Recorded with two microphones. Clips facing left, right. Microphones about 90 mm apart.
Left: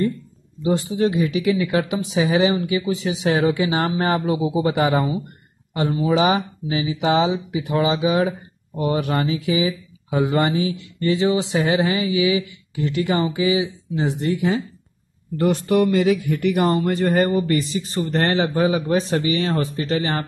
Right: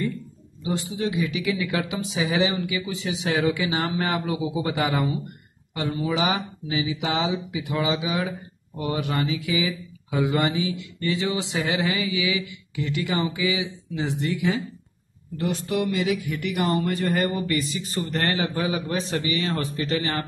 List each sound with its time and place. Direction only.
0.7 s speech: 45° left (ahead or behind); by 12.8 s 25° left (ahead or behind)
12.8 s speech: 40° left (ahead or behind)
15.5 s speech: 55° left (ahead or behind); by 20.2 s 30° left (ahead or behind)